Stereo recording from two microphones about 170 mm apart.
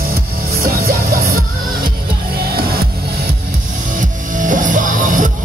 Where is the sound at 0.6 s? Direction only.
60° right (ahead or behind).